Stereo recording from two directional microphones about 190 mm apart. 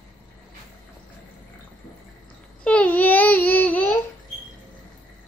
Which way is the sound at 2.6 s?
5° left (ahead or behind).